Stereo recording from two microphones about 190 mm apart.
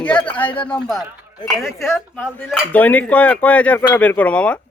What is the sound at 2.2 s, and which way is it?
A man's voice, 10° left (ahead or behind).